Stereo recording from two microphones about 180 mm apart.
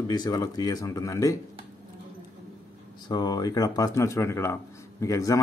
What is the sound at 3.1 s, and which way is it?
Speech, 20° left (ahead or behind).